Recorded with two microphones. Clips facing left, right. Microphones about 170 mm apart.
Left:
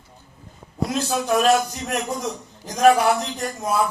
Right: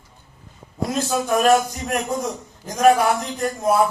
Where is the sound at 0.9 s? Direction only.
50° right (ahead or behind).